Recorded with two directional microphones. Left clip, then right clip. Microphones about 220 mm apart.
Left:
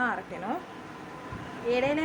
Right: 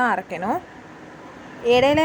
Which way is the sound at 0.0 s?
30° right (ahead or behind).